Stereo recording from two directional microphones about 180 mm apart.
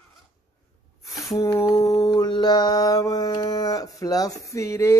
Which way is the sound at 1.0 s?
20° left (ahead or behind).